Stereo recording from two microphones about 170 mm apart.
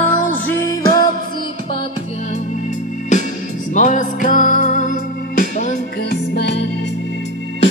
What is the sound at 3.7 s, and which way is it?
Music, 50° left (ahead or behind).